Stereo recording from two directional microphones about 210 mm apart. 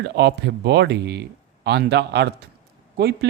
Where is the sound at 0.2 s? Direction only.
55° right (ahead or behind).